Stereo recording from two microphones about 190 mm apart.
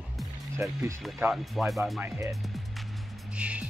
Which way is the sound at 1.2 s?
Centre (ahead or behind).